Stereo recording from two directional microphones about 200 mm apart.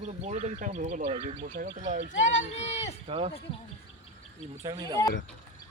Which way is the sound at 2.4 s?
30° left (ahead or behind).